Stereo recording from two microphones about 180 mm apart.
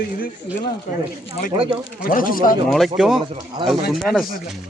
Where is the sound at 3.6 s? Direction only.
25° right (ahead or behind).